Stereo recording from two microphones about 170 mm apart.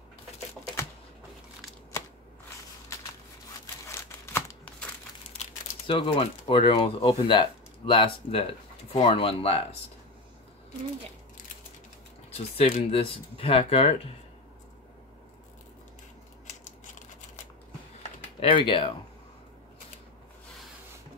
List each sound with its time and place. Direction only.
3.8 s crumpling: 15° left (ahead or behind)
5.4 s speech: 30° left (ahead or behind)
12.3 s speech: 35° left (ahead or behind)
18.4 s speech: 30° left (ahead or behind)